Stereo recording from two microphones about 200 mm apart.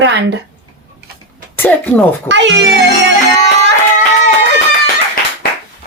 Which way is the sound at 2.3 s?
65° right (ahead or behind).